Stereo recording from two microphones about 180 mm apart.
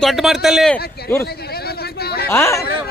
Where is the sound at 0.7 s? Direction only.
10° left (ahead or behind).